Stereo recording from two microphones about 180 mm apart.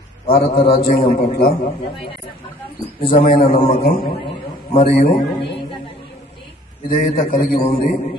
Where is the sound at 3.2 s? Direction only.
55° left (ahead or behind).